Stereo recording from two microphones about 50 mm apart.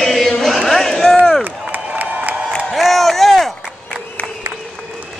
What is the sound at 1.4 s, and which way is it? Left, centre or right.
Crowd, right.